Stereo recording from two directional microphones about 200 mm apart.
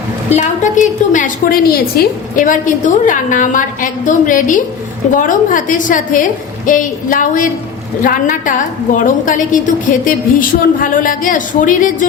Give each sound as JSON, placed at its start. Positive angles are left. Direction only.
{"t": 0.3, "sound": "a woman's voice", "side_deg": 40}